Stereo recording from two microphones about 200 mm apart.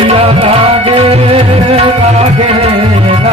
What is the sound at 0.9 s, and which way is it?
Music, 30° right (ahead or behind).